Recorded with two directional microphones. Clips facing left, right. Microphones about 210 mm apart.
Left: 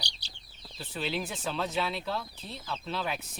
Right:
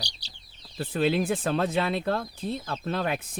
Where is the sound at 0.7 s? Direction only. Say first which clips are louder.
Right 9 dB; 55° right (ahead or behind).